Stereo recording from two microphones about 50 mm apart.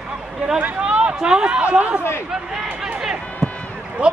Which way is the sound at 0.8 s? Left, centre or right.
Right.